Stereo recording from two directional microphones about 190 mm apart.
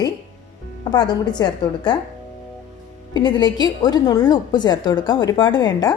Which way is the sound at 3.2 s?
20° left (ahead or behind).